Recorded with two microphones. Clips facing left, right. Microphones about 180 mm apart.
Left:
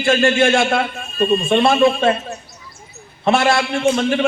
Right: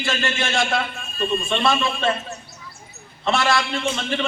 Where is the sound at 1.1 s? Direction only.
40° left (ahead or behind).